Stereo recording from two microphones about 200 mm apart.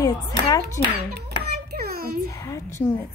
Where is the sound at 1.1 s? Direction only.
50° right (ahead or behind).